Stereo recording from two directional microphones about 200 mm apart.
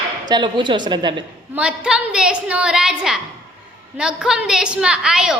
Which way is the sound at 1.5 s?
5° right (ahead or behind).